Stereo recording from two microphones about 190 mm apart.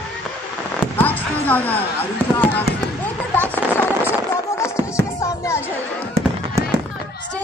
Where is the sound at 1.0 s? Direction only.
10° left (ahead or behind).